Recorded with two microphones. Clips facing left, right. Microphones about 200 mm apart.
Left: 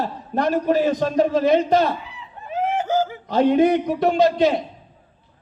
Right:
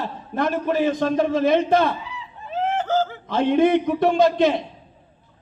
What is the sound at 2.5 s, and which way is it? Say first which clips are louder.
Snicker: left 1 dB; 10° left (ahead or behind).